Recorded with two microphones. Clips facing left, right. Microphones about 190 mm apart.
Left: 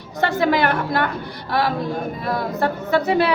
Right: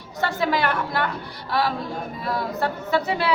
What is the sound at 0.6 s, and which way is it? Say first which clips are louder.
A capella: left 4 dB; 50° left (ahead or behind).